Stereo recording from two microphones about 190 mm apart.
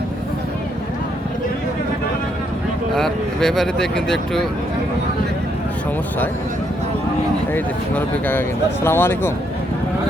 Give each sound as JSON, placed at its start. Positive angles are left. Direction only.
{"t": 2.9, "sound": "speech", "side_deg": 0}
{"t": 7.5, "sound": "speech", "side_deg": 10}